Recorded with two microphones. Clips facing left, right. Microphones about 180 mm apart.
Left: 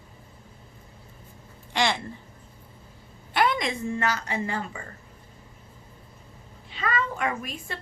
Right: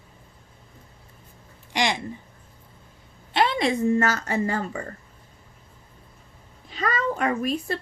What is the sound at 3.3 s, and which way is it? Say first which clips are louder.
A woman's voice: right 3 dB; 30° right (ahead or behind).